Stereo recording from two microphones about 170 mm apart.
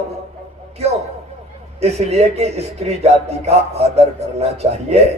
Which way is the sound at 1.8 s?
40° right (ahead or behind).